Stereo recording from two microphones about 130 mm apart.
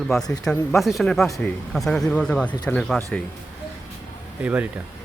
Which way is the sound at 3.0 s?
15° left (ahead or behind).